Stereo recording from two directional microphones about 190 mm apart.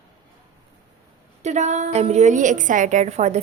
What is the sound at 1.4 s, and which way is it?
A woman's voice, 35° right (ahead or behind).